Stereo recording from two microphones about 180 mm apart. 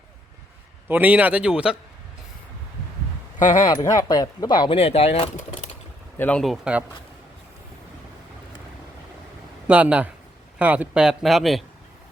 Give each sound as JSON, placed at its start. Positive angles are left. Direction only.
{"t": 0.9, "sound": "speech", "side_deg": -10}
{"t": 3.7, "sound": "speech", "side_deg": 20}
{"t": 6.1, "sound": "speech", "side_deg": 5}
{"t": 9.6, "sound": "speech", "side_deg": -5}